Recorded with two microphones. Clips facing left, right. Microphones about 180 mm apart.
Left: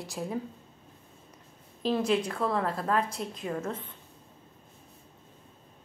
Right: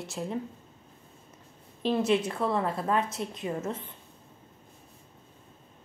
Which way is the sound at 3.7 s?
30° right (ahead or behind).